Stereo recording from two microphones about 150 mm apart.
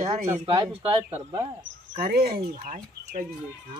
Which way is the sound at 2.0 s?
85° right.